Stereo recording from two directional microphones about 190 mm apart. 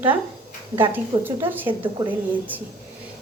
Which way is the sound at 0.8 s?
10° right (ahead or behind).